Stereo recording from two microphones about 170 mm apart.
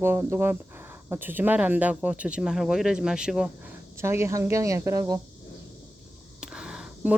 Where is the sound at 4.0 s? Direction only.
15° right (ahead or behind).